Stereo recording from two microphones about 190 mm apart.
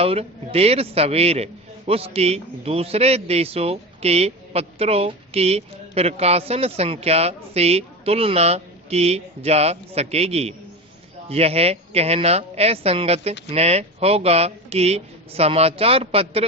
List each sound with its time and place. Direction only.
0.0 s a man's voice: 30° right (ahead or behind)